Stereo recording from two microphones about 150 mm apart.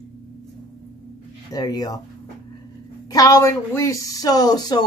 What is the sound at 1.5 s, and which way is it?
Speech, 25° left (ahead or behind).